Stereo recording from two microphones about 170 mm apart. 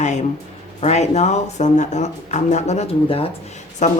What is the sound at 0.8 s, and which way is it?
Speech, 40° left (ahead or behind).